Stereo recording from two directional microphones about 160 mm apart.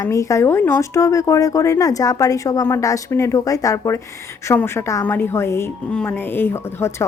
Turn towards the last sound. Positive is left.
turn(degrees=15)  # may be behind; listen again after turning